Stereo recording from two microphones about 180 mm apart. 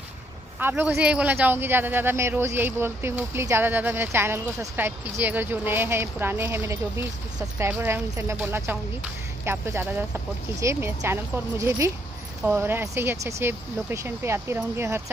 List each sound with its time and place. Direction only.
0.6 s speech: 10° right (ahead or behind)